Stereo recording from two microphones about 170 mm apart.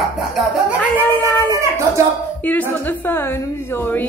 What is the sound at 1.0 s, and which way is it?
A woman's voice, 10° left (ahead or behind).